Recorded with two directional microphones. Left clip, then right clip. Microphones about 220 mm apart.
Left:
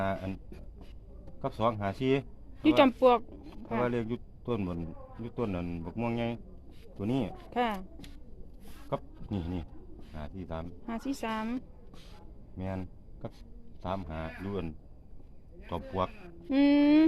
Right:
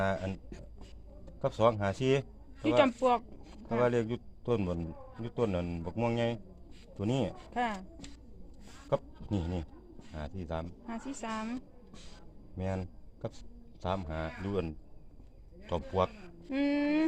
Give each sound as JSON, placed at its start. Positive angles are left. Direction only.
{"t": 1.4, "sound": "speech", "side_deg": -30}
{"t": 2.6, "sound": "speech", "side_deg": 45}
{"t": 3.8, "sound": "a man's voice", "side_deg": -30}
{"t": 7.5, "sound": "a woman's voice", "side_deg": 45}
{"t": 8.9, "sound": "a man's voice", "side_deg": -35}
{"t": 10.8, "sound": "a woman's voice", "side_deg": 45}
{"t": 12.5, "sound": "a sound", "side_deg": -30}
{"t": 13.8, "sound": "a man's voice", "side_deg": -35}
{"t": 16.5, "sound": "a woman's voice", "side_deg": 45}